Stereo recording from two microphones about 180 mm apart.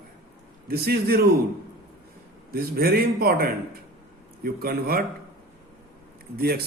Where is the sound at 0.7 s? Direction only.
60° right (ahead or behind).